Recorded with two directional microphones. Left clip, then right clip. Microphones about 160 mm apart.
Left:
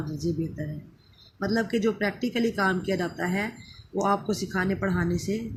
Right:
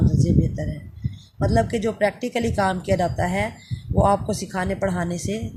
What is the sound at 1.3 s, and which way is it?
Speech, 55° right (ahead or behind).